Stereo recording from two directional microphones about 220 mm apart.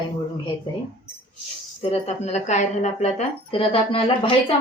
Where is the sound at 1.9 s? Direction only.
30° left (ahead or behind).